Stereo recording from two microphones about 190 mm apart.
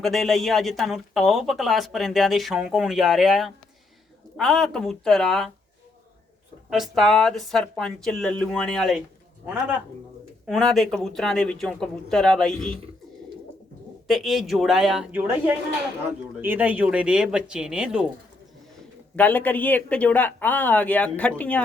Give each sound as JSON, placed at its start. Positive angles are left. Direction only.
{"t": 0.0, "sound": "speech", "side_deg": 0}
{"t": 6.7, "sound": "speech", "side_deg": 0}
{"t": 10.4, "sound": "speech", "side_deg": 0}
{"t": 14.1, "sound": "speech", "side_deg": 0}
{"t": 19.1, "sound": "speech", "side_deg": 10}